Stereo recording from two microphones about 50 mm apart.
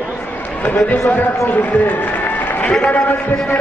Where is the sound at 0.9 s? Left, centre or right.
Left.